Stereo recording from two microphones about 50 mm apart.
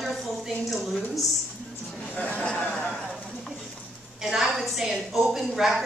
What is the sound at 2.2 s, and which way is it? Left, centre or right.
Speech, left.